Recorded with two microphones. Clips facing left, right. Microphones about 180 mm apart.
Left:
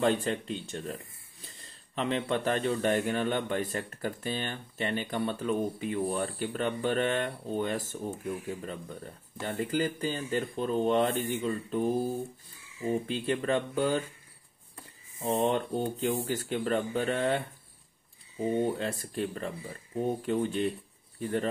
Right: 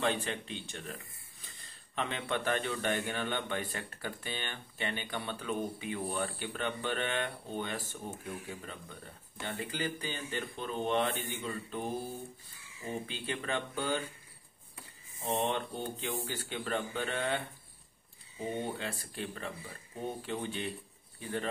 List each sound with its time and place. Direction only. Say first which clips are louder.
0.0 s speech: left 6 dB; 40° left (ahead or behind)
15.2 s speech: left 5 dB; 40° left (ahead or behind)
18.6 s speech: left 8 dB; 40° left (ahead or behind)